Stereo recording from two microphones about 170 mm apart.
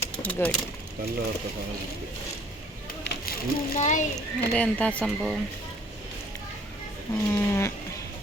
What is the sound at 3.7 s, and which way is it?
Speech, 40° left (ahead or behind).